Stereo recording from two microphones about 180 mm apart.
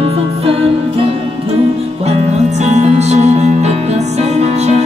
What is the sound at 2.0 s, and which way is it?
Music, 40° right (ahead or behind).